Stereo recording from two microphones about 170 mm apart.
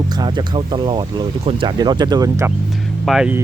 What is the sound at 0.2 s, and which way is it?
Speech, 25° right (ahead or behind).